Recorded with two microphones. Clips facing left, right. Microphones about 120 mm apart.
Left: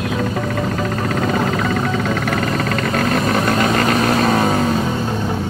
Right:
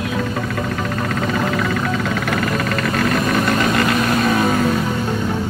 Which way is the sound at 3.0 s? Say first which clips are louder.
Even; 40° left (ahead or behind).